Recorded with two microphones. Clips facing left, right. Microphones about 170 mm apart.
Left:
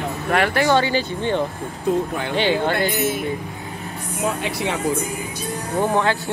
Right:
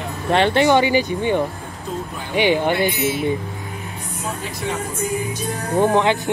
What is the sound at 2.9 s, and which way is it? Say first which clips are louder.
Speech: even; 45° left (ahead or behind).